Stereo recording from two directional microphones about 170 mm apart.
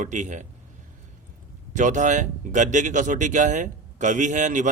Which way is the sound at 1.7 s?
45° right (ahead or behind).